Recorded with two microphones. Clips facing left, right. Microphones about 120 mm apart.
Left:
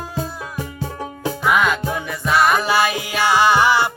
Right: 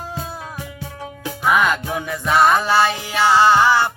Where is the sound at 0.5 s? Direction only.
40° left (ahead or behind).